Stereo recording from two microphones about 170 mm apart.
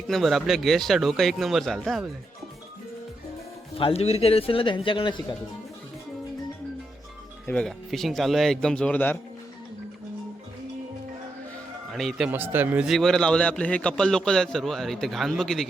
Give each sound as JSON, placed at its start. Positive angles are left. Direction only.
{"t": 0.1, "sound": "a man's voice", "side_deg": 0}
{"t": 3.8, "sound": "speech", "side_deg": 35}
{"t": 7.4, "sound": "a man's voice", "side_deg": 5}
{"t": 11.9, "sound": "a man's voice", "side_deg": 0}